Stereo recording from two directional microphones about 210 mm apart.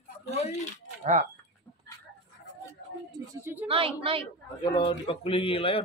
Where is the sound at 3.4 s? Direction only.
10° right (ahead or behind).